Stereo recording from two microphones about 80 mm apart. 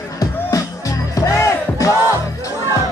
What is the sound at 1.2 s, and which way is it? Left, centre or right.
Music, left.